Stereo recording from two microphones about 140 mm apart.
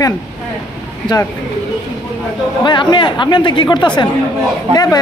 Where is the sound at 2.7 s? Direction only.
35° left (ahead or behind).